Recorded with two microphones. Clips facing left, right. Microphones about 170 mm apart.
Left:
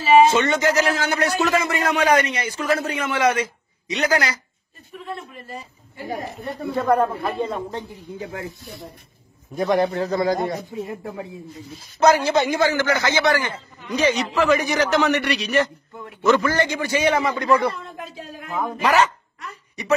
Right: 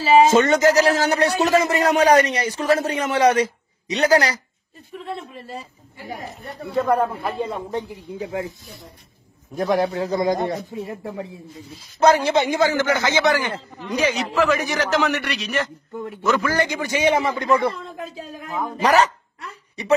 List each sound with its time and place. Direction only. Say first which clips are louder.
0.3 s a man's voice: right 4 dB; 40° right (ahead or behind)
6.7 s a man's voice: even; centre (ahead or behind)
7.0 s speech: left 1 dB; 10° right (ahead or behind)
9.6 s a man's voice: left 1 dB; centre (ahead or behind)
10.1 s a man's voice: right 2 dB; 20° right (ahead or behind)
12.0 s a man's voice: even; 25° right (ahead or behind); by 16.5 s centre (ahead or behind)
16.5 s a man's voice: even; 15° right (ahead or behind)
18.4 s a man's voice: right 1 dB; 40° right (ahead or behind)